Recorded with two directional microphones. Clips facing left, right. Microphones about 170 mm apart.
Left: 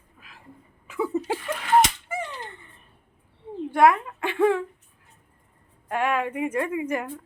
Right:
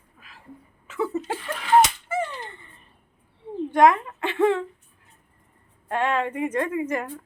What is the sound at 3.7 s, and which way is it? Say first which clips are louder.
Speech: right 1 dB; 10° left (ahead or behind).